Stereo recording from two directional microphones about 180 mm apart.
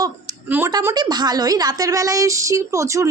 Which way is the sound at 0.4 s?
10° right (ahead or behind).